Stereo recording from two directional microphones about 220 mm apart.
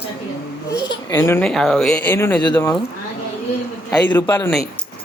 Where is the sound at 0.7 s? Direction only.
15° left (ahead or behind).